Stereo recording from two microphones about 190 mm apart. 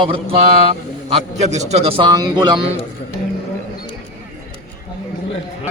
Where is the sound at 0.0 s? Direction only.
30° right (ahead or behind).